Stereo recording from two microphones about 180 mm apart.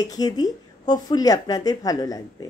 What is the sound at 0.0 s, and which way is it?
Speech, 20° left (ahead or behind).